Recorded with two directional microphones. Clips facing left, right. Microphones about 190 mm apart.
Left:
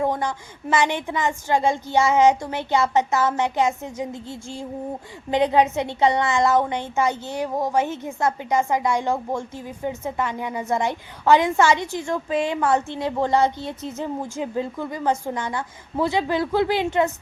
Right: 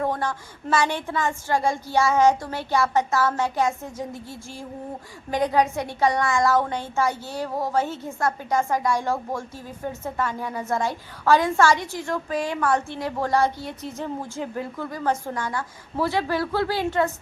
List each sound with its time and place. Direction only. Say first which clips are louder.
0.0 s a woman's voice: left 2 dB; 15° left (ahead or behind)